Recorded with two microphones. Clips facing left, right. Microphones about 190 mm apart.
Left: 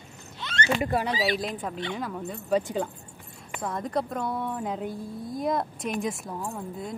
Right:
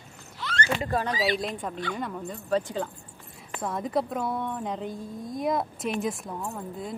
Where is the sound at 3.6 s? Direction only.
Centre (ahead or behind).